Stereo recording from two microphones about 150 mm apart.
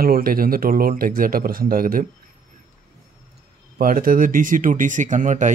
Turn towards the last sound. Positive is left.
turn(degrees=-55)  # may be behind; listen again after turning